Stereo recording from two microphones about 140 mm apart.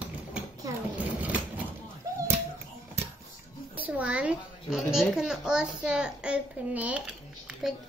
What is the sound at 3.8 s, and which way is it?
A child's voice, 10° right (ahead or behind).